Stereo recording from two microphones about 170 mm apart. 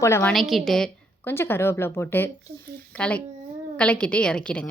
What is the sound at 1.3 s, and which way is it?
A woman's voice, 15° left (ahead or behind).